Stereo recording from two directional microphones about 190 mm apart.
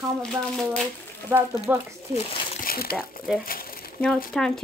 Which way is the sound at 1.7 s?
10° right (ahead or behind).